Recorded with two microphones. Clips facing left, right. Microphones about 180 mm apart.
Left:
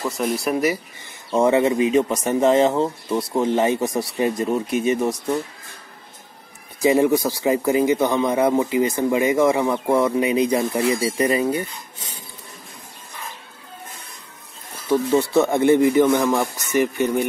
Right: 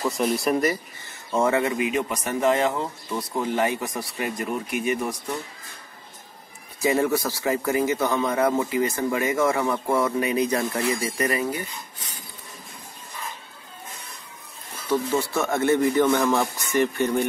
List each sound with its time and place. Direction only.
0.0 s speech: centre (ahead or behind)
1.3 s speech: 20° left (ahead or behind)
6.8 s speech: 20° left (ahead or behind)
15.1 s speech: 20° left (ahead or behind)